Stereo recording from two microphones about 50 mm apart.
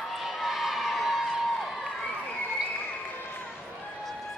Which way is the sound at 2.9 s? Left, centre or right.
Left.